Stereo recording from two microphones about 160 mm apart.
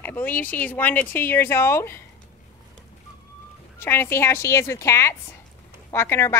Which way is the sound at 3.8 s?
15° left (ahead or behind).